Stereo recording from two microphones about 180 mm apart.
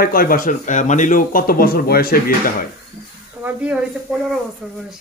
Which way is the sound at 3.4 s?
10° right (ahead or behind).